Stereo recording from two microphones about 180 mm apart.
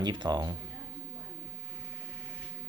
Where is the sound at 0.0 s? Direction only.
25° right (ahead or behind).